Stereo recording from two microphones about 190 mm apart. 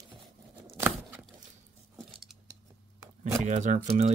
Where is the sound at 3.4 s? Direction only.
40° right (ahead or behind).